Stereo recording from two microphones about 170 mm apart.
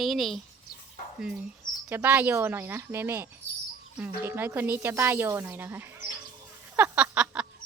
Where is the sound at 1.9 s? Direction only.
10° right (ahead or behind).